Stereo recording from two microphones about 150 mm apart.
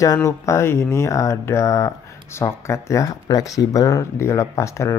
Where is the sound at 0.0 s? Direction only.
20° left (ahead or behind).